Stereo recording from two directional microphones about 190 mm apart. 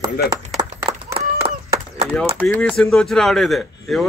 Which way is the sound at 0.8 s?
30° right (ahead or behind).